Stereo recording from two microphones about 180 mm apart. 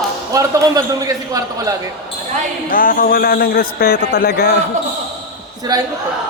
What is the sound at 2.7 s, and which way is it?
A man's voice, 50° left (ahead or behind).